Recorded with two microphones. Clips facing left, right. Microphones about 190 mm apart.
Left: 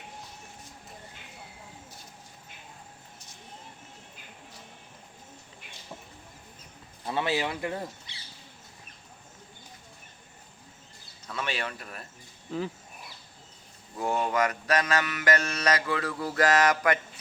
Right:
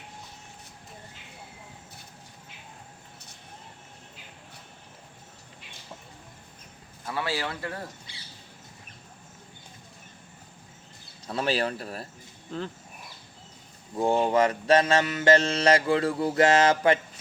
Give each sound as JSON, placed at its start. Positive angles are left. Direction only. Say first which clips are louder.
{"t": 7.0, "sound": "speech", "louder": "left 2 dB", "side_deg": 20}
{"t": 11.3, "sound": "speech", "louder": "right 7 dB", "side_deg": -35}
{"t": 12.5, "sound": "speech", "louder": "left 2 dB", "side_deg": 5}
{"t": 14.0, "sound": "mantra", "louder": "right 5 dB", "side_deg": -30}